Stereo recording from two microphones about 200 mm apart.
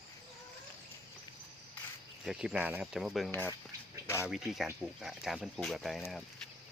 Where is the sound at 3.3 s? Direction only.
10° left (ahead or behind).